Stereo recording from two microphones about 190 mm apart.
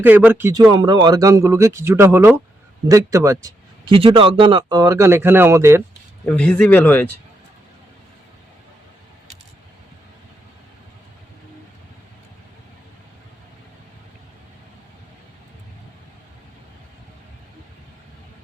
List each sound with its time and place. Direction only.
0.0 s speech: 10° right (ahead or behind)
6.2 s speech: 5° left (ahead or behind)